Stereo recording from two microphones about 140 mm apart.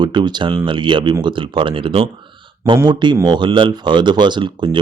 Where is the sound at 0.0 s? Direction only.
30° right (ahead or behind).